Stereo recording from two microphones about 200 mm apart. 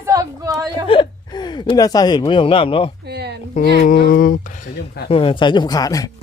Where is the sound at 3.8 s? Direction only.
45° left (ahead or behind).